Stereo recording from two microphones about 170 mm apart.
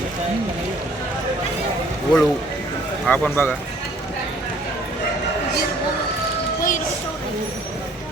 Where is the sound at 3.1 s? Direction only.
10° left (ahead or behind).